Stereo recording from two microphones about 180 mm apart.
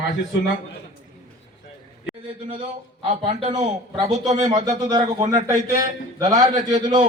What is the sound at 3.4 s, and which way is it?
Speech, 40° right (ahead or behind).